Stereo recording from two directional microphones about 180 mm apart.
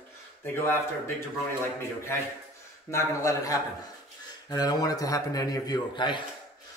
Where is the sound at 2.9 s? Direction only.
15° left (ahead or behind).